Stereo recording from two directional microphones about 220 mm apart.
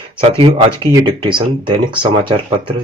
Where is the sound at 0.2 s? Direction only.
25° right (ahead or behind).